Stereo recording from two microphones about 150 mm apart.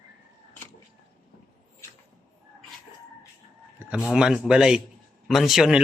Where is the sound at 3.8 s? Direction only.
10° right (ahead or behind).